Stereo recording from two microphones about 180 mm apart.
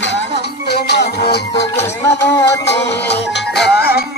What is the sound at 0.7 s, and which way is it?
Music, 65° left (ahead or behind).